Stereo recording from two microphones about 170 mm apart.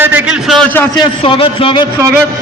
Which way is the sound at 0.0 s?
10° right (ahead or behind).